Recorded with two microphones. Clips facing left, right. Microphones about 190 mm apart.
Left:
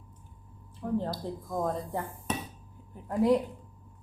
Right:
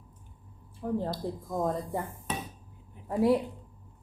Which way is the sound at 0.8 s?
10° right (ahead or behind).